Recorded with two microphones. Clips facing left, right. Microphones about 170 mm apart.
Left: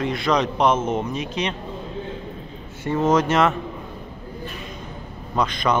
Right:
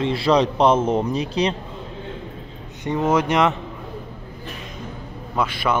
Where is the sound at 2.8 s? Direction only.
15° right (ahead or behind).